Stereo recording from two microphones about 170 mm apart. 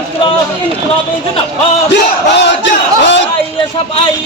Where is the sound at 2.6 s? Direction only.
90° left.